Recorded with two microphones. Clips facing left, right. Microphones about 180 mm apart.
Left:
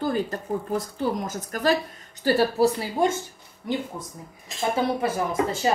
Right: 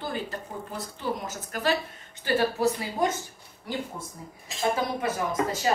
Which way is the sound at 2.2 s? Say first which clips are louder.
Left 4 dB; 30° left (ahead or behind).